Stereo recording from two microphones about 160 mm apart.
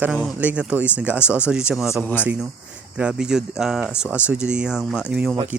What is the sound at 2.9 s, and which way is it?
Speech, 5° right (ahead or behind).